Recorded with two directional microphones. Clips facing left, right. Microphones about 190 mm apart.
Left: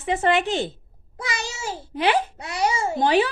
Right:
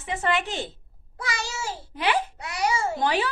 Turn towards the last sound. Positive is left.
turn(degrees=20)  # may be behind; listen again after turning